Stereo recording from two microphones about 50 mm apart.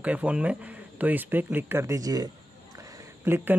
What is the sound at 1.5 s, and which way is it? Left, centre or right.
Speech, right.